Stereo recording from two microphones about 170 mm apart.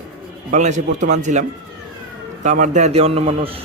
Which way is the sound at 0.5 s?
45° right (ahead or behind).